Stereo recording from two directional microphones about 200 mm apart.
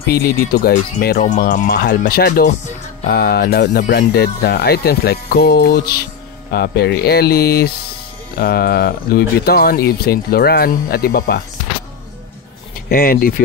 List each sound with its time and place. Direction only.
0.0 s speech: 50° left (ahead or behind)
1.7 s speech: 55° left (ahead or behind)
12.9 s speech: 45° left (ahead or behind)